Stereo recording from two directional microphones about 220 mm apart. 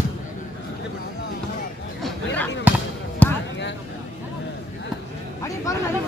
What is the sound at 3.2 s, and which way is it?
Basketball bounce, 5° left (ahead or behind).